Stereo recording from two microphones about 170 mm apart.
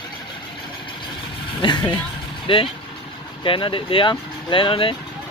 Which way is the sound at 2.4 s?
30° left (ahead or behind).